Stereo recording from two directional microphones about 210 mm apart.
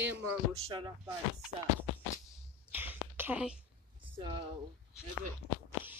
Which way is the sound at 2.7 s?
10° right (ahead or behind).